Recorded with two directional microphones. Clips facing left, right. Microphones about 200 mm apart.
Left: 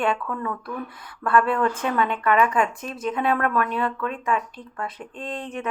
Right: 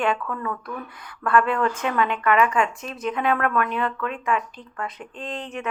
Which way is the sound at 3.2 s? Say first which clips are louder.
Even; 30° left (ahead or behind).